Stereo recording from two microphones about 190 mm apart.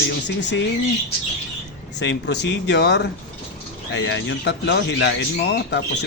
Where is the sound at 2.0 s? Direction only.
65° left (ahead or behind).